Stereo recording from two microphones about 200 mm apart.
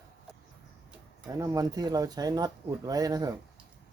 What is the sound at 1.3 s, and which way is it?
Speech, 15° right (ahead or behind).